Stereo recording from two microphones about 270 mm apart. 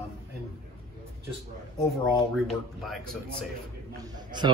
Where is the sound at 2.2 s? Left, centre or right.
Centre.